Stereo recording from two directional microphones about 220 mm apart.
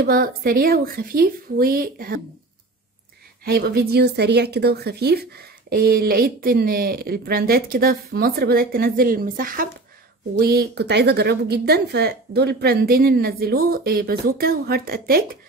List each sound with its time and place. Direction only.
0.0 s speech: 40° right (ahead or behind)
3.4 s speech: 45° right (ahead or behind)